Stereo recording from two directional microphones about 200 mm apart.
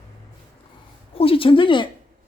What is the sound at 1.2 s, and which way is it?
Speech, 25° left (ahead or behind).